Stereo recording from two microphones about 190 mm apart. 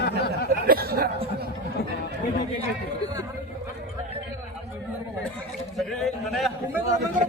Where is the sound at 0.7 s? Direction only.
50° right (ahead or behind).